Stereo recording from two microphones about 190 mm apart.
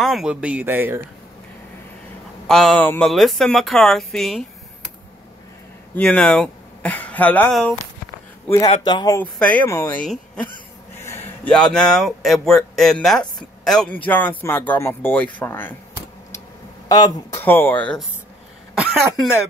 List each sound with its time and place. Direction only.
0.0 s speech: centre (ahead or behind)
2.4 s speech: 5° left (ahead or behind)
5.9 s speech: 5° left (ahead or behind)
8.6 s speech: 25° left (ahead or behind)
9.2 s speech: 5° left (ahead or behind)
16.9 s speech: 15° left (ahead or behind)
18.8 s speech: 5° right (ahead or behind)